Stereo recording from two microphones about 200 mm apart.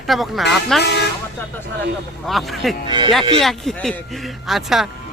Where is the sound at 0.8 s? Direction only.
55° left (ahead or behind).